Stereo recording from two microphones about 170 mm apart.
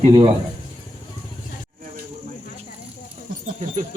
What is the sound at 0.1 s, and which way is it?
Speech, 35° right (ahead or behind).